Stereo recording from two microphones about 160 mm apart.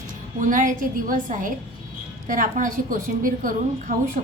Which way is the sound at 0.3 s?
55° right (ahead or behind).